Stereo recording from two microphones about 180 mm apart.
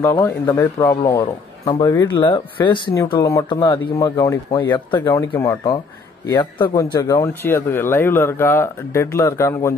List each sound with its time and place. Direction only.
0.2 s speech: 15° left (ahead or behind)